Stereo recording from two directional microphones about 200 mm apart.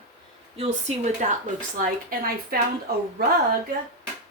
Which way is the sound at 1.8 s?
45° right (ahead or behind).